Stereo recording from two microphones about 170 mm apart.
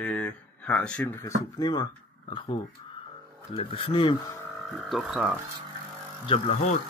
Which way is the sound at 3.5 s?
30° left (ahead or behind).